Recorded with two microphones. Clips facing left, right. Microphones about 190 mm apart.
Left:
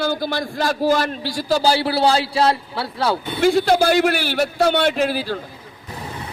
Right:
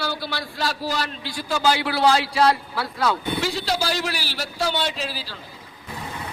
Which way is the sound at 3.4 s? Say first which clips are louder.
Left 10 dB; 55° left (ahead or behind).